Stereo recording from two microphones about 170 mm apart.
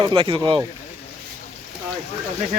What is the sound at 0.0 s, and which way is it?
Speech, 30° right (ahead or behind).